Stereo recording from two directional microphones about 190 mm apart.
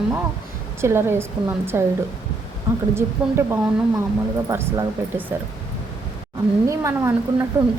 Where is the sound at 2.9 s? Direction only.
10° right (ahead or behind).